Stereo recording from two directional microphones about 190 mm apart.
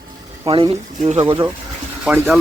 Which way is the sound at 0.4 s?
30° right (ahead or behind).